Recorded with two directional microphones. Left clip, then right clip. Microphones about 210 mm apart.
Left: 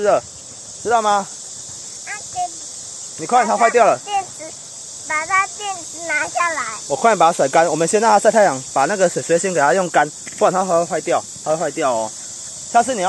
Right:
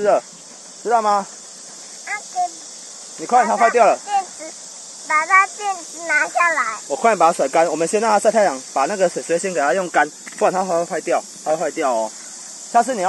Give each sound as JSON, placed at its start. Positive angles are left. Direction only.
{"t": 0.8, "sound": "speech", "side_deg": 10}
{"t": 3.3, "sound": "speech", "side_deg": 15}
{"t": 5.0, "sound": "speech", "side_deg": 0}
{"t": 6.9, "sound": "speech", "side_deg": 15}